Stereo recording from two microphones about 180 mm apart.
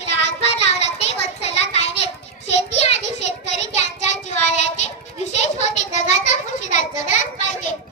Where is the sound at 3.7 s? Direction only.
40° left (ahead or behind).